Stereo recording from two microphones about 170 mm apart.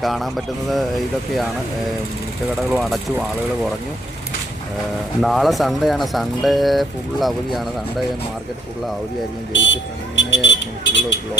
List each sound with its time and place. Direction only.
0.0 s speech: centre (ahead or behind)
2.7 s speech: centre (ahead or behind)
5.2 s speech: centre (ahead or behind)
9.5 s speech: 90° left